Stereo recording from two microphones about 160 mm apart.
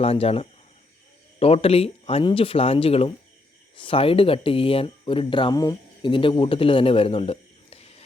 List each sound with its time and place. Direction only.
0.0 s speech: 40° left (ahead or behind)